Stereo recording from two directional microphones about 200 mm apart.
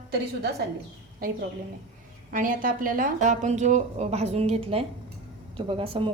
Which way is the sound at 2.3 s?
45° right (ahead or behind).